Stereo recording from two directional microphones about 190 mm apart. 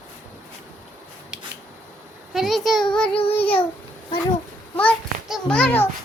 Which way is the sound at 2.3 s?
Centre (ahead or behind).